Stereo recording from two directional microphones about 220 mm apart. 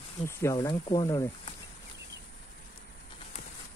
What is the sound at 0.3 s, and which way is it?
Speech, 15° left (ahead or behind).